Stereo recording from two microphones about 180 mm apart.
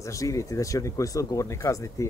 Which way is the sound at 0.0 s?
15° left (ahead or behind).